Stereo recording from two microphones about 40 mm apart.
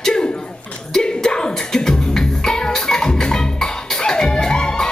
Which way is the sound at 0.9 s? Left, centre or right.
Centre.